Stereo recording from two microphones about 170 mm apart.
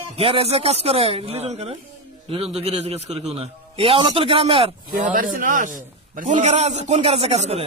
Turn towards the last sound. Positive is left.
turn(degrees=-40)  # may be behind; listen again after turning